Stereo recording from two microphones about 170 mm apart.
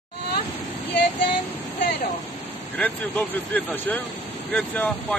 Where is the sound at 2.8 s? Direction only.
10° left (ahead or behind).